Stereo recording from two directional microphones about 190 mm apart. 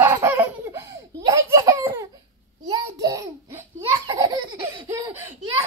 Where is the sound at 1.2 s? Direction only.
15° right (ahead or behind).